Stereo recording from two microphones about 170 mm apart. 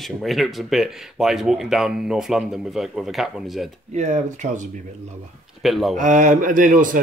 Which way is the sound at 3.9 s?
45° right (ahead or behind).